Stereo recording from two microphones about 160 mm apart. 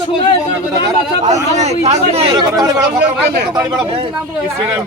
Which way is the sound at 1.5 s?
45° right (ahead or behind).